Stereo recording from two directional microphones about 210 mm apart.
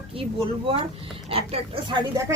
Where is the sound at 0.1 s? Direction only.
25° right (ahead or behind).